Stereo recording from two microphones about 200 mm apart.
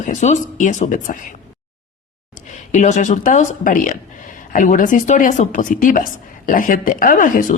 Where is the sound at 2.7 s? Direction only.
40° left (ahead or behind).